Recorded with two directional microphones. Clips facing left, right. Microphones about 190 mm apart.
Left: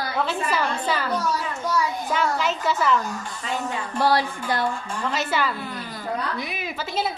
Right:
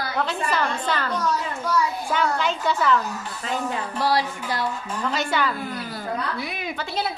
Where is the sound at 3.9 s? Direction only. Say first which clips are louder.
Left 3 dB; 50° left (ahead or behind).